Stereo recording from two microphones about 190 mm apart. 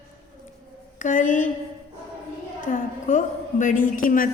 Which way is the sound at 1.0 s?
40° left (ahead or behind).